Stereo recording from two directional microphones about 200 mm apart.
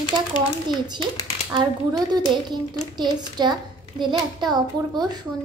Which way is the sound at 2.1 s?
20° right (ahead or behind).